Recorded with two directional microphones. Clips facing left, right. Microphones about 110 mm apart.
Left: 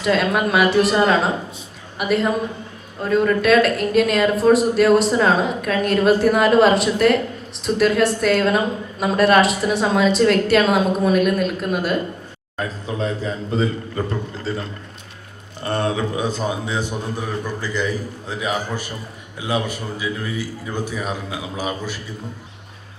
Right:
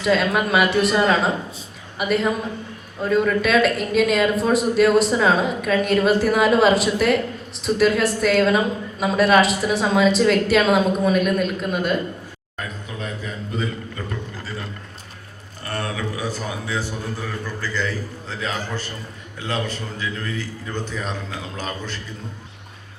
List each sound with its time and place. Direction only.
0.0 s speech: centre (ahead or behind)
12.5 s a sound: 30° left (ahead or behind)
15.6 s a man's voice: 25° left (ahead or behind)